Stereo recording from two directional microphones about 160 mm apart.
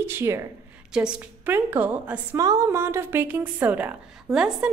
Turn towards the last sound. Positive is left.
turn(degrees=-5)  # may be behind; listen again after turning